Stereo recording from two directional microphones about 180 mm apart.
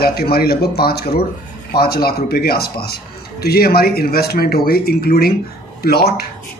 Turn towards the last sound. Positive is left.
turn(degrees=60)  # may be behind; listen again after turning